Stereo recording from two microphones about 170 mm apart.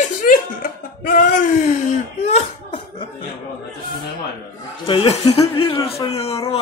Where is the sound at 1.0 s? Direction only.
55° left (ahead or behind).